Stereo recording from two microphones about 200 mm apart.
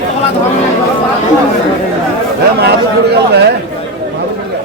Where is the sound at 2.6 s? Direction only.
55° right (ahead or behind).